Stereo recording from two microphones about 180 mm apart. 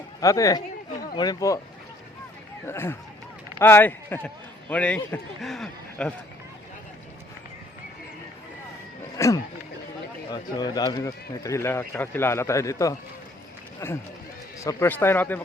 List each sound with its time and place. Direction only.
0.2 s speech: 20° left (ahead or behind)
2.6 s speech: 15° left (ahead or behind)
9.0 s a sound: 15° left (ahead or behind)
10.3 s speech: 20° left (ahead or behind)